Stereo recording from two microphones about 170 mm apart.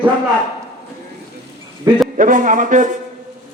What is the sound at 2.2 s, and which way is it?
Speech, 50° right (ahead or behind).